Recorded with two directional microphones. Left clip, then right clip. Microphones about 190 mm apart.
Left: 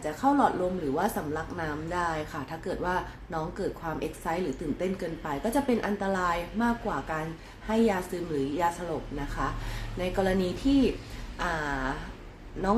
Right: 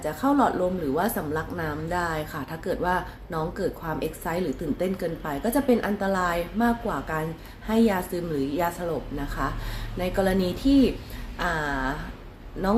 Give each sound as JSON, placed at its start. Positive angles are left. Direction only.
{"t": 0.0, "sound": "a woman's voice", "side_deg": -15}